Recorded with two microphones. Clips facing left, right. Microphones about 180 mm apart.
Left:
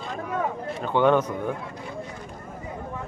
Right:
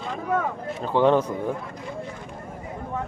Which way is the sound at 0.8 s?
30° right (ahead or behind).